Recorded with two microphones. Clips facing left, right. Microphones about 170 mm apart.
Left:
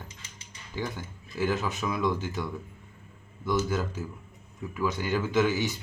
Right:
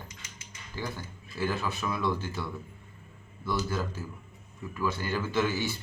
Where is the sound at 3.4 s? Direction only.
20° left (ahead or behind).